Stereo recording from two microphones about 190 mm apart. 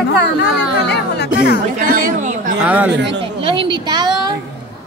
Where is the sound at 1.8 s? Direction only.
45° right (ahead or behind).